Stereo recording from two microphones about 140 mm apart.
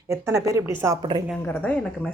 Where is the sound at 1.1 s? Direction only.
35° right (ahead or behind).